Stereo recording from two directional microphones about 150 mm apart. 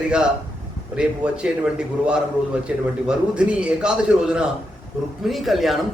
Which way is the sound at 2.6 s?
5° right (ahead or behind).